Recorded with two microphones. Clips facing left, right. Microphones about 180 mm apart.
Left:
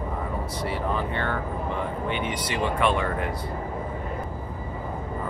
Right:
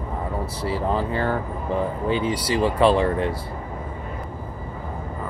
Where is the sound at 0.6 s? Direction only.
30° right (ahead or behind).